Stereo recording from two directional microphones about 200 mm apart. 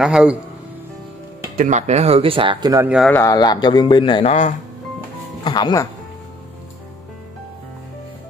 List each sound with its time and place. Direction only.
0.0 s speech: 5° right (ahead or behind)
1.6 s speech: 35° right (ahead or behind); by 2.9 s 20° right (ahead or behind)
2.9 s speech: centre (ahead or behind)
3.2 s speech: 20° left (ahead or behind); by 4.6 s 35° left (ahead or behind)
5.4 s speech: 20° left (ahead or behind)